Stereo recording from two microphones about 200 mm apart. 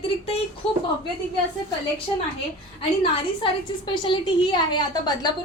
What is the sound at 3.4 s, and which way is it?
A woman's voice, 25° left (ahead or behind).